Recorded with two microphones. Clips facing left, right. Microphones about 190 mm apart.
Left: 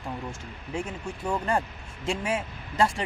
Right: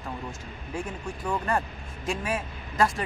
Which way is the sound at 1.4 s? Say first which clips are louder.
Left 1 dB; 25° left (ahead or behind).